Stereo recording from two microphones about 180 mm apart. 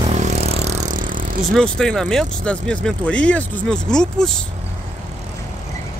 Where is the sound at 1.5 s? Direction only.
5° left (ahead or behind).